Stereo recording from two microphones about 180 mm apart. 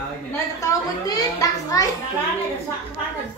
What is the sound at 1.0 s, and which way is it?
Speech, 20° left (ahead or behind).